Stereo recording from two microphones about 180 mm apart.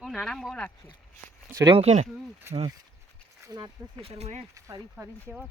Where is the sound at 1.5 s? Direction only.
20° right (ahead or behind).